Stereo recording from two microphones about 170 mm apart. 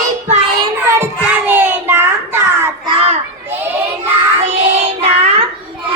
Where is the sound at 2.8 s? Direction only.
35° right (ahead or behind).